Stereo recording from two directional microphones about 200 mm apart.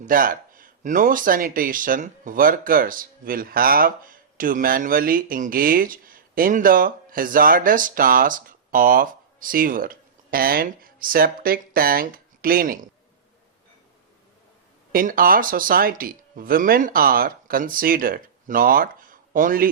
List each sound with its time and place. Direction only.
0.0 s speech: 45° right (ahead or behind)
14.9 s speech: 45° right (ahead or behind)